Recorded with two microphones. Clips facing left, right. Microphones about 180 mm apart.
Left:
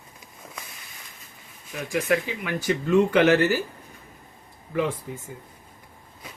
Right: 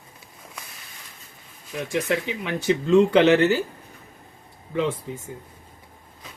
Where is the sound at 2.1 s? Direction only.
25° right (ahead or behind).